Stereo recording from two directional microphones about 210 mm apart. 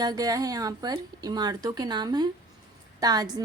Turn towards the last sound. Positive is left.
turn(degrees=-20)  # may be behind; listen again after turning